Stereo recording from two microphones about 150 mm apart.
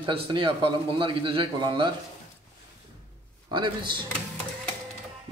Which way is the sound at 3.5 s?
30° right (ahead or behind).